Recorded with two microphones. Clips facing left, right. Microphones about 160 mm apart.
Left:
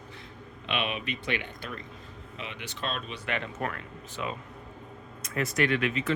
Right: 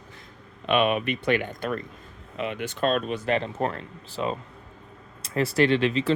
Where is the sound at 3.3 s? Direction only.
30° right (ahead or behind).